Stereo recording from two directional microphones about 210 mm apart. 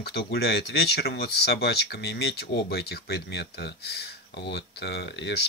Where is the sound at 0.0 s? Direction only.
50° left (ahead or behind).